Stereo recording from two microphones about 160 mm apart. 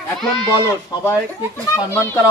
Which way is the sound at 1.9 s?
15° left (ahead or behind).